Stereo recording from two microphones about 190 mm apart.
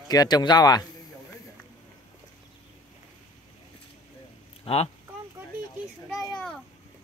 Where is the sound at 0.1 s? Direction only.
20° left (ahead or behind).